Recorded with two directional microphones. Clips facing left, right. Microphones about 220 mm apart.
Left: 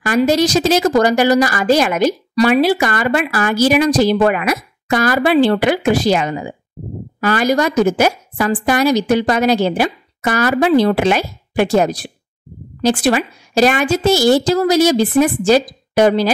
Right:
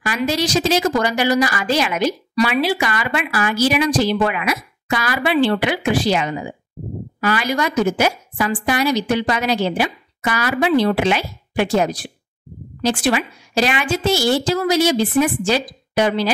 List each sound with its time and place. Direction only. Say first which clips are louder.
0.0 s a woman's voice: left 7 dB; 45° left (ahead or behind)